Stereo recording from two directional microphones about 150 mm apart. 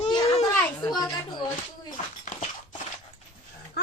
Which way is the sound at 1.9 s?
60° left (ahead or behind).